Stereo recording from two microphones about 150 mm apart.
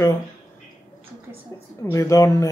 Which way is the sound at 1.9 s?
20° left (ahead or behind).